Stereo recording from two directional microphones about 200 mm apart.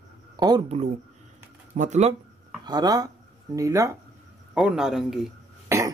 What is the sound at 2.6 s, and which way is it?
Speech, 20° right (ahead or behind).